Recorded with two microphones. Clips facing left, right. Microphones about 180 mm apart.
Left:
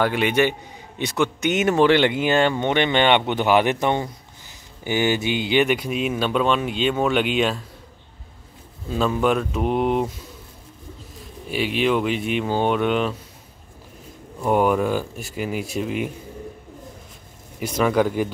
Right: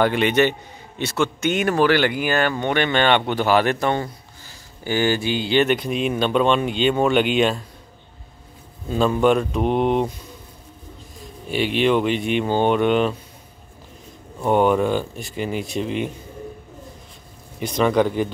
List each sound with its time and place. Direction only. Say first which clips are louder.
0.0 s speech: right 2 dB; 5° left (ahead or behind)
8.9 s speech: right 3 dB; centre (ahead or behind)
11.5 s speech: right 2 dB; centre (ahead or behind)
14.4 s speech: right 2 dB; 5° left (ahead or behind)
17.6 s speech: right 1 dB; 5° left (ahead or behind)